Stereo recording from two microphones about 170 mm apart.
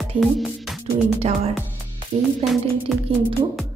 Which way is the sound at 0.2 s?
Centre (ahead or behind).